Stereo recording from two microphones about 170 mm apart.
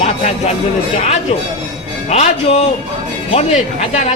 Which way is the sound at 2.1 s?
40° left (ahead or behind).